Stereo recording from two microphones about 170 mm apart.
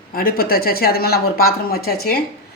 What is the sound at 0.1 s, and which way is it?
Speech, 60° left (ahead or behind).